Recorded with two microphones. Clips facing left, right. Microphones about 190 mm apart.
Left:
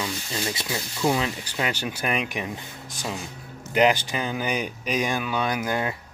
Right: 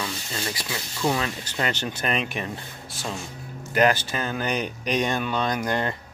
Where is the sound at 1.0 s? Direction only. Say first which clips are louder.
Left 1 dB; 15° left (ahead or behind).